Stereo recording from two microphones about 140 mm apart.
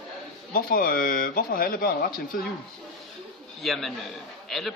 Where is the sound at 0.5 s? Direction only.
90° left.